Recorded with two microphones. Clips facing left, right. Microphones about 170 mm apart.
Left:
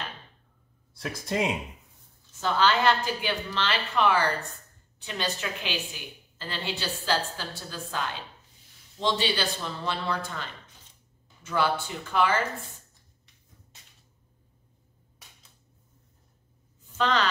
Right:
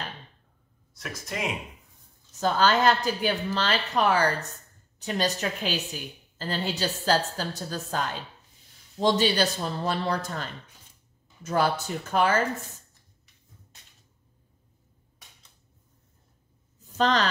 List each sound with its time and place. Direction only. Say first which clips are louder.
0.9 s speech: left 6 dB; 30° left (ahead or behind)
2.4 s a woman's voice: right 2 dB; 40° right (ahead or behind)
16.9 s a woman's voice: right 2 dB; 40° right (ahead or behind)